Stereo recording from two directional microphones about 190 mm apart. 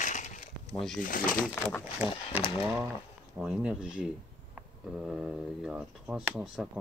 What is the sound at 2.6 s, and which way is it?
Speech, 15° right (ahead or behind).